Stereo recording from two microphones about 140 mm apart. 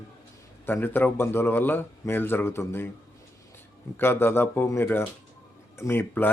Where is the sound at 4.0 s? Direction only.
15° left (ahead or behind).